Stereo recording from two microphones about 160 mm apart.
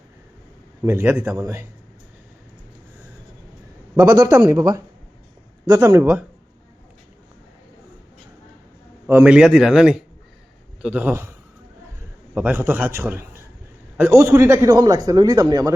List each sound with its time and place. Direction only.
0.9 s a man's voice: 15° right (ahead or behind)
3.9 s a man's voice: 20° right (ahead or behind)
9.0 s a man's voice: 10° right (ahead or behind)
12.3 s a man's voice: 10° right (ahead or behind)